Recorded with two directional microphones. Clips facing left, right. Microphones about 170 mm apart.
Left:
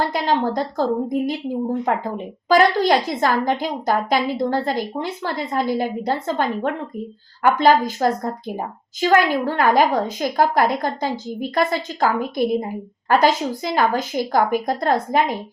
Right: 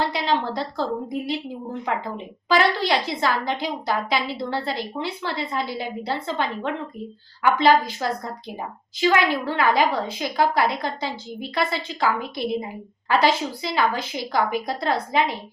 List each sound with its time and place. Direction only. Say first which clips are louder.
0.0 s a woman's voice: left 3 dB; 45° left (ahead or behind)
2.5 s a woman's voice: left 5 dB; 45° left (ahead or behind)